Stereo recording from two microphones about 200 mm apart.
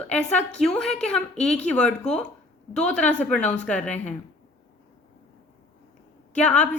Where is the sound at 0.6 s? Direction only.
Centre (ahead or behind).